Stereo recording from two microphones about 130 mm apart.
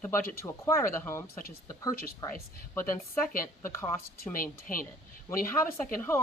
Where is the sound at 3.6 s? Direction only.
20° left (ahead or behind).